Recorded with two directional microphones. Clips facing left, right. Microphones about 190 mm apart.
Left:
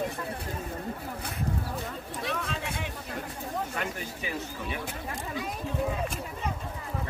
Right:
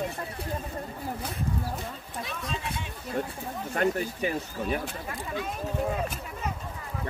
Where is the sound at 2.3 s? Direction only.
65° left (ahead or behind).